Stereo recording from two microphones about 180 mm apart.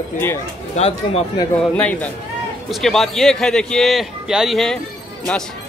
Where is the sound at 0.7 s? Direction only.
35° left (ahead or behind).